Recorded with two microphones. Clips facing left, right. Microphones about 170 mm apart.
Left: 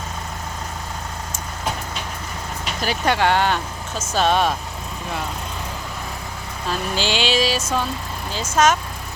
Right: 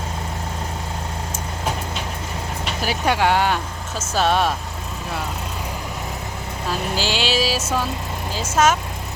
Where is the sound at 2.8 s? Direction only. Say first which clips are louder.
Even; 10° right (ahead or behind).